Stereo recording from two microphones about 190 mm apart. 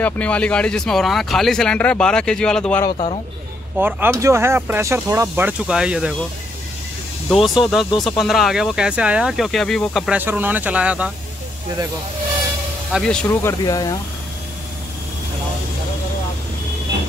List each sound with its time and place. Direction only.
0.0 s speech: 5° left (ahead or behind)
2.8 s speech: 30° left (ahead or behind)
3.7 s speech: 10° right (ahead or behind)
7.2 s speech: centre (ahead or behind)
12.9 s speech: 5° left (ahead or behind); by 13.9 s 20° left (ahead or behind)